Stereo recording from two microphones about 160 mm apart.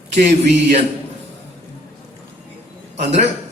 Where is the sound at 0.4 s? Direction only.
90° right.